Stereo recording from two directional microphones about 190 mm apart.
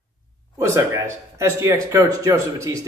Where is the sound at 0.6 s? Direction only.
15° right (ahead or behind).